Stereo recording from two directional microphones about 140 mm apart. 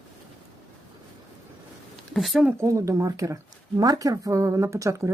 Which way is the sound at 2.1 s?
Centre (ahead or behind).